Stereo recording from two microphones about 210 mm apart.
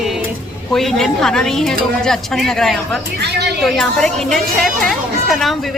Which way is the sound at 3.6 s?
Centre (ahead or behind).